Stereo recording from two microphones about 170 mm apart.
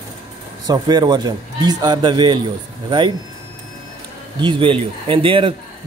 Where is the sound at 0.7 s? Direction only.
25° right (ahead or behind).